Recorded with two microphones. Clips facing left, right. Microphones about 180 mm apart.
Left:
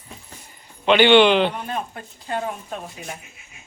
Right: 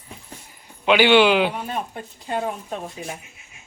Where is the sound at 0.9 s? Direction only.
5° right (ahead or behind).